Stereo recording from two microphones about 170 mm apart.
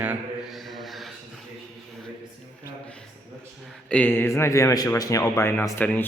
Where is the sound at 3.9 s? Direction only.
10° left (ahead or behind).